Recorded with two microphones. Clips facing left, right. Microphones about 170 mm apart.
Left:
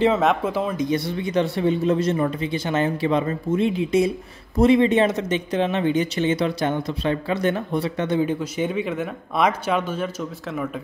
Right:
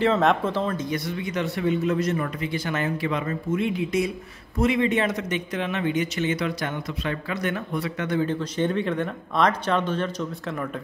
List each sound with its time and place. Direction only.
0.2 s speech: 5° left (ahead or behind)
0.8 s speech: 30° left (ahead or behind)
8.2 s speech: 10° left (ahead or behind)